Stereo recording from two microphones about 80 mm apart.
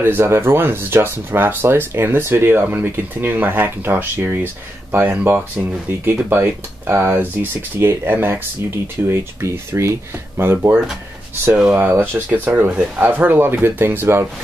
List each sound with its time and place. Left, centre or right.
0.0 s speech: right